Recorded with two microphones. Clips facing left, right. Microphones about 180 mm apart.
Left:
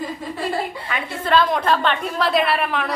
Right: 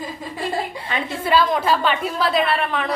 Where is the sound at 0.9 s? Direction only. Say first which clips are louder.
Right 4 dB; 30° right (ahead or behind).